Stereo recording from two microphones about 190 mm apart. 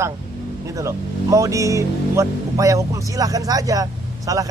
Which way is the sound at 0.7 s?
15° right (ahead or behind).